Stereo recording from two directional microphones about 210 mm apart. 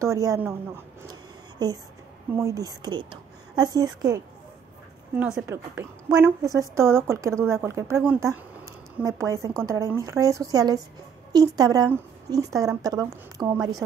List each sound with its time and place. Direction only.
0.0 s a woman's voice: 15° right (ahead or behind)
1.6 s a woman's voice: 20° right (ahead or behind)